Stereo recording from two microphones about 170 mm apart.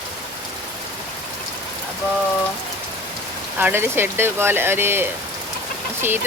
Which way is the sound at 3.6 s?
15° right (ahead or behind).